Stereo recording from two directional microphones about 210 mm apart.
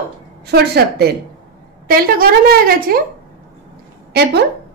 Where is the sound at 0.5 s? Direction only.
50° right (ahead or behind).